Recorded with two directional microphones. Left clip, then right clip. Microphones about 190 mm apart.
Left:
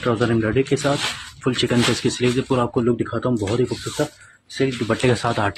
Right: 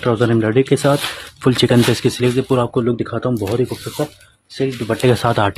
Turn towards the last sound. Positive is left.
turn(degrees=-35)  # may be behind; listen again after turning